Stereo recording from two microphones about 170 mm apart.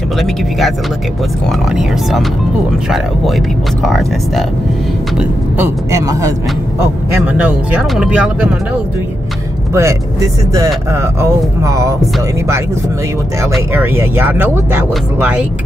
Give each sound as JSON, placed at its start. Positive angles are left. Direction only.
{"t": 0.2, "sound": "speech", "side_deg": 0}
{"t": 5.6, "sound": "speech", "side_deg": -20}
{"t": 7.3, "sound": "speech", "side_deg": -5}
{"t": 9.8, "sound": "speech", "side_deg": -15}
{"t": 13.7, "sound": "speech", "side_deg": -15}